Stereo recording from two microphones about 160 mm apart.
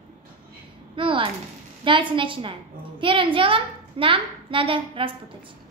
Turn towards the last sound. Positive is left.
turn(degrees=-35)  # may be behind; listen again after turning